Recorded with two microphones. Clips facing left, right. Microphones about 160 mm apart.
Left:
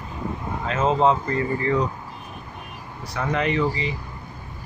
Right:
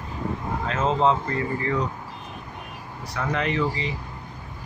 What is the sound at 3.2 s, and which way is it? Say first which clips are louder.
Speech: left 2 dB; 15° left (ahead or behind).